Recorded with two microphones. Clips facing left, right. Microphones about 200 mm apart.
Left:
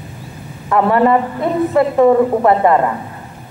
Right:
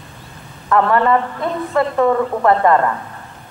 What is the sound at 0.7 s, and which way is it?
A woman's voice, 10° left (ahead or behind).